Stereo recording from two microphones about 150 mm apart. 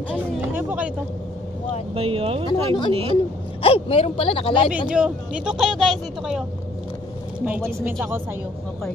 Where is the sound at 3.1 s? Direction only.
40° left (ahead or behind).